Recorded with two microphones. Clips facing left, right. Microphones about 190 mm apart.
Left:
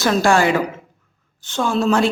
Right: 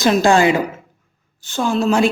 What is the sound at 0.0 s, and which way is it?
Speech, 20° right (ahead or behind).